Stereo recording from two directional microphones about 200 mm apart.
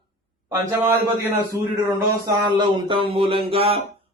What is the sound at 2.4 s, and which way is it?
Speech, 20° right (ahead or behind).